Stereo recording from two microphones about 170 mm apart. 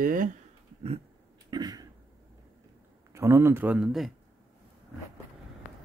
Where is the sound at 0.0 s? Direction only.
55° right (ahead or behind).